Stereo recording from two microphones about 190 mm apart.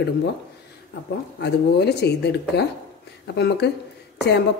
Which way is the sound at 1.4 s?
60° left (ahead or behind).